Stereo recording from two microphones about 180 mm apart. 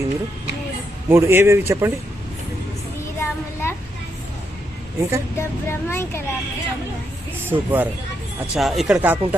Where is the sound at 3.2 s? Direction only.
15° left (ahead or behind).